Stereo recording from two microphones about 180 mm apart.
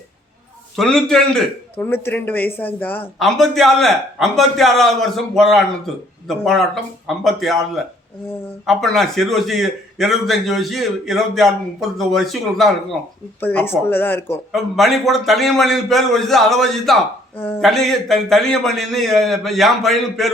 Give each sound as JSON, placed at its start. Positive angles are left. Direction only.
{"t": 0.8, "sound": "a man's voice", "side_deg": 5}
{"t": 8.6, "sound": "a man's voice", "side_deg": 0}
{"t": 13.4, "sound": "a man's voice", "side_deg": 10}
{"t": 14.5, "sound": "a man's voice", "side_deg": 0}